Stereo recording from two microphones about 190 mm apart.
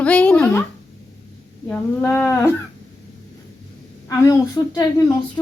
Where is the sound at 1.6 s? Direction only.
10° left (ahead or behind).